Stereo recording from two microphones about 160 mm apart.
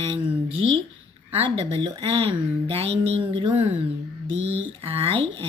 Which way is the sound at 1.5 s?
35° right (ahead or behind).